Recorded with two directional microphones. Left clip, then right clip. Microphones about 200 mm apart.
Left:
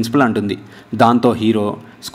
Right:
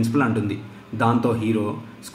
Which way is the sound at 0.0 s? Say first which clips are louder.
Left 7 dB; 45° left (ahead or behind).